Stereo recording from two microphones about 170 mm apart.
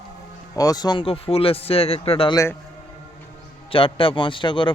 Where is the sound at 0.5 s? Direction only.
20° left (ahead or behind).